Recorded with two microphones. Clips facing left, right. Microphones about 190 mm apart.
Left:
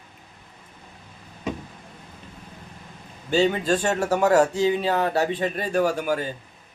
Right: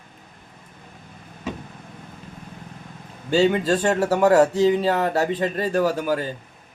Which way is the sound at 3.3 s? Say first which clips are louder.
Right 2 dB; 40° right (ahead or behind).